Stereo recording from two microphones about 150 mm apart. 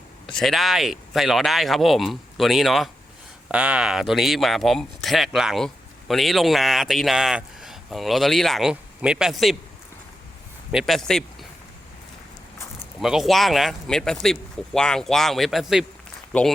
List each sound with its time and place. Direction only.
0.3 s speech: centre (ahead or behind)
10.7 s speech: centre (ahead or behind)
13.0 s speech: centre (ahead or behind)